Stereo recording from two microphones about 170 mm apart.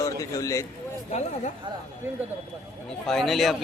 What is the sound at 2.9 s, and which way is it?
Speech, 5° left (ahead or behind).